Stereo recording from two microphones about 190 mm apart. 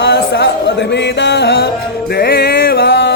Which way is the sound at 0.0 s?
60° left (ahead or behind).